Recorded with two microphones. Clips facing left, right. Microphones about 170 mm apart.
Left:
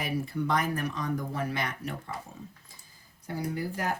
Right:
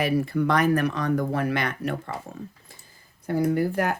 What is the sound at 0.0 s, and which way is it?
Speech, 70° right (ahead or behind).